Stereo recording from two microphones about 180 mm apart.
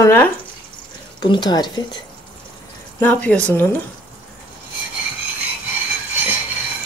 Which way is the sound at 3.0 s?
10° left (ahead or behind).